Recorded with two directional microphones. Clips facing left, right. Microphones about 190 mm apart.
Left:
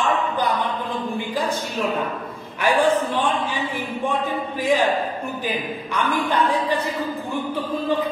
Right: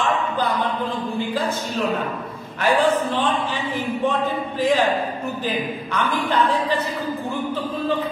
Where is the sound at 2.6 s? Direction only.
10° left (ahead or behind).